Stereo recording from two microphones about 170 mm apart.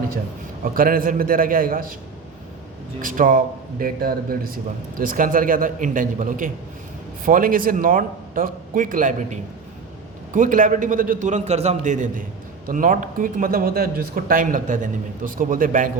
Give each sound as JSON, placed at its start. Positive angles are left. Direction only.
{"t": 0.6, "sound": "a man's voice", "side_deg": -55}
{"t": 3.0, "sound": "a man's voice", "side_deg": -50}